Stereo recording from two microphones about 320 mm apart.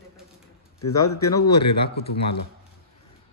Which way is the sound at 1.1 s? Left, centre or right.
Centre.